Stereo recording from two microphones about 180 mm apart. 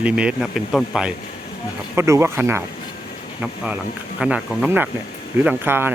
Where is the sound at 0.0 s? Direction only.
5° right (ahead or behind).